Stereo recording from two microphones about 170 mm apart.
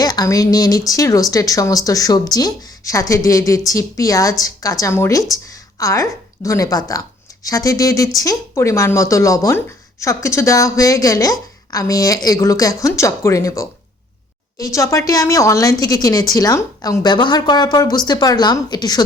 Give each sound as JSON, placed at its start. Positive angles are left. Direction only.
{"t": 0.0, "sound": "a woman's voice", "side_deg": 20}